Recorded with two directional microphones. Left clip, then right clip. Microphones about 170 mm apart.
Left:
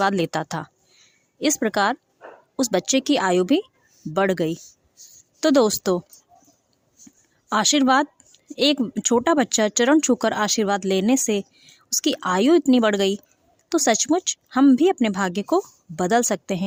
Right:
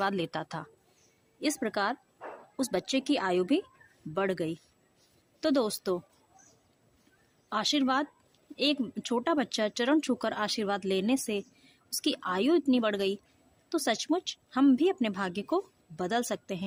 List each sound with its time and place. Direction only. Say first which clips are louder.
0.0 s speech: left 10 dB; 40° left (ahead or behind)
7.5 s speech: left 10 dB; 45° left (ahead or behind)